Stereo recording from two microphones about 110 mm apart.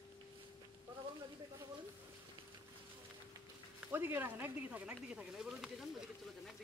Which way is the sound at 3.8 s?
20° right (ahead or behind).